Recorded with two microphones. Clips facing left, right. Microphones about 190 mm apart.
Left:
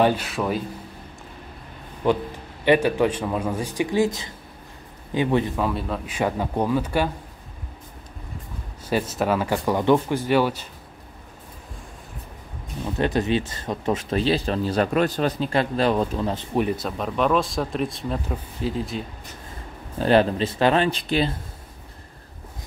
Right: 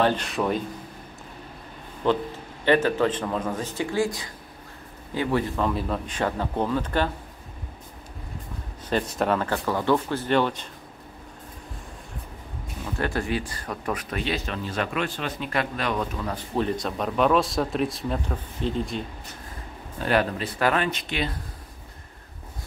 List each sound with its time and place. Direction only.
0.0 s speech: 5° left (ahead or behind)
2.0 s a man's voice: 10° left (ahead or behind)
5.6 s a man's voice: centre (ahead or behind)
9.1 s a man's voice: 5° left (ahead or behind)
12.8 s speech: 20° left (ahead or behind)
16.6 s speech: 5° left (ahead or behind)
20.0 s speech: 30° left (ahead or behind)